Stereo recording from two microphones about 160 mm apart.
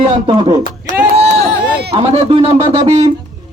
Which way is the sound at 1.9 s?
40° right (ahead or behind).